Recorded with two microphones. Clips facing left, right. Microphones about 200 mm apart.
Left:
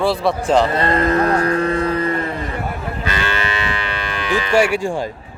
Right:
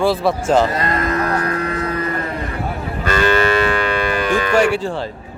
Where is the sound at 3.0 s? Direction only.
45° right (ahead or behind).